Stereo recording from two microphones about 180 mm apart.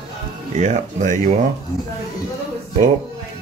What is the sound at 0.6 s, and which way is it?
Speech, 40° right (ahead or behind).